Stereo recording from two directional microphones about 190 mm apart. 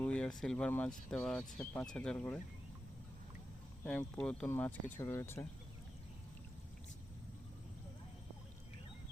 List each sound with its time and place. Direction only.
0.0 s speech: 5° left (ahead or behind)
3.8 s speech: 5° left (ahead or behind)